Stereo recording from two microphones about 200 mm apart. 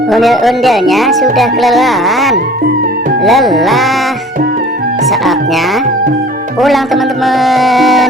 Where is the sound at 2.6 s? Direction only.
50° right (ahead or behind).